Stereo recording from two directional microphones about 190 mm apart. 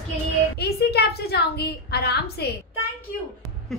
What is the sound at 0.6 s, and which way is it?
A woman's voice, 55° left (ahead or behind).